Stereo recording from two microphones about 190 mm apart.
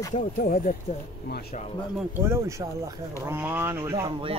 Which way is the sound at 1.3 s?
55° left (ahead or behind).